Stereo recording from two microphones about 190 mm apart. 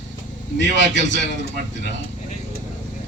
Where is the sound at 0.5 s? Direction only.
70° left (ahead or behind).